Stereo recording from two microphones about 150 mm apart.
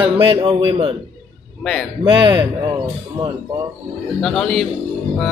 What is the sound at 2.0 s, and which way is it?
Speech, 30° right (ahead or behind).